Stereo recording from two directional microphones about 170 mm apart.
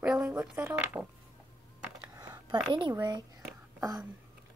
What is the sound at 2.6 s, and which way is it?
Speech, 30° right (ahead or behind).